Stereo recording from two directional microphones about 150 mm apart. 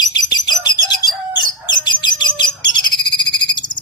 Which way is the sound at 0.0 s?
30° left (ahead or behind).